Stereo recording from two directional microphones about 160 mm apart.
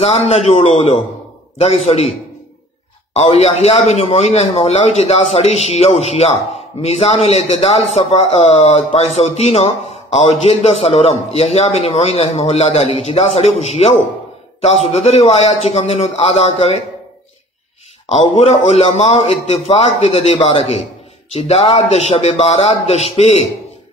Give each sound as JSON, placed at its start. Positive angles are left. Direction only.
{"t": 0.0, "sound": "a man's voice", "side_deg": 40}
{"t": 18.0, "sound": "a man's voice", "side_deg": 40}